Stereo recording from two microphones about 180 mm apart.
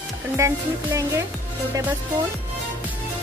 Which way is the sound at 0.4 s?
15° right (ahead or behind).